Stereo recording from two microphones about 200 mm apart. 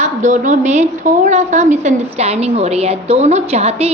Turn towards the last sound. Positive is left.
turn(degrees=-30)  # may be behind; listen again after turning